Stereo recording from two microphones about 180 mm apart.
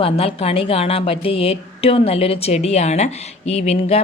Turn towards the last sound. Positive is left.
turn(degrees=35)  # may be behind; listen again after turning